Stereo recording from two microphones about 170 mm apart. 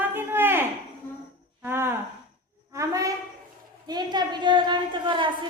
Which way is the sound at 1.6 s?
15° right (ahead or behind).